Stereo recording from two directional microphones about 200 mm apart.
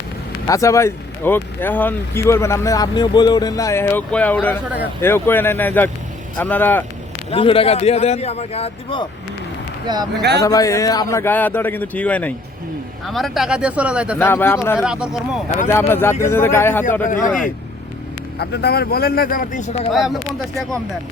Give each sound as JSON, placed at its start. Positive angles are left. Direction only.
{"t": 0.4, "sound": "speech", "side_deg": 15}
{"t": 7.3, "sound": "a man's voice", "side_deg": 25}
{"t": 9.8, "sound": "speech", "side_deg": -20}
{"t": 10.2, "sound": "speech", "side_deg": -55}
{"t": 10.4, "sound": "speech", "side_deg": 15}
{"t": 14.2, "sound": "speech", "side_deg": 10}
{"t": 14.8, "sound": "speech", "side_deg": -5}
{"t": 15.6, "sound": "speech", "side_deg": 10}
{"t": 17.1, "sound": "a man's voice", "side_deg": 40}
{"t": 18.3, "sound": "speech", "side_deg": 55}
{"t": 19.9, "sound": "speech", "side_deg": 0}